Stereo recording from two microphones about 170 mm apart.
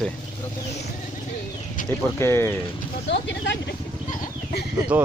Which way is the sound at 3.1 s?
90° left.